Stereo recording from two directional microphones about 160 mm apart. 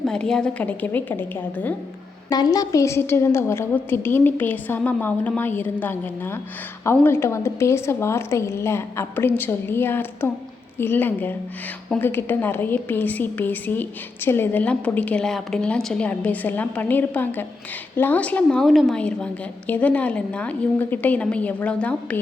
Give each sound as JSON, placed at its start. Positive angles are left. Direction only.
{"t": 0.0, "sound": "a woman's voice", "side_deg": 5}
{"t": 2.3, "sound": "a woman's voice", "side_deg": 25}